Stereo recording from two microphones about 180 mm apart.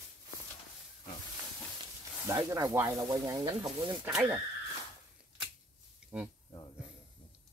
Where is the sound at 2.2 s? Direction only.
20° right (ahead or behind).